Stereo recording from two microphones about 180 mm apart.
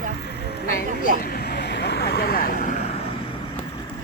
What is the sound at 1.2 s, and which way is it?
Vehicle, 65° left (ahead or behind).